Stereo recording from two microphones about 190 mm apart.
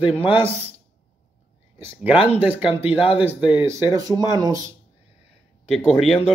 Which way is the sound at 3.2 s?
5° right (ahead or behind).